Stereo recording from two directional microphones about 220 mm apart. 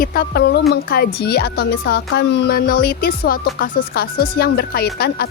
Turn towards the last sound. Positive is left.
turn(degrees=45)  # may be behind; listen again after turning